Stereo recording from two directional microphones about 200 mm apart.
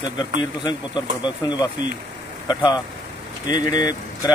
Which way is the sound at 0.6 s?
20° left (ahead or behind).